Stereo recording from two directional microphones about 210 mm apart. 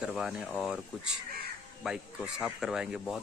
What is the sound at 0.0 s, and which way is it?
Speech, 5° right (ahead or behind).